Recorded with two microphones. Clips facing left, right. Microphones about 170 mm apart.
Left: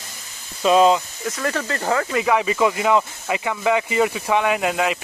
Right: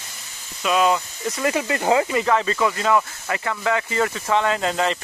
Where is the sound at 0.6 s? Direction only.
30° left (ahead or behind).